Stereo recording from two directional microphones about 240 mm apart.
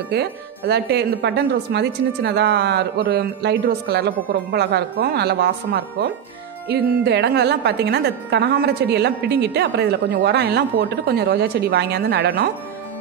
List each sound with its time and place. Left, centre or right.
0.1 s speech: right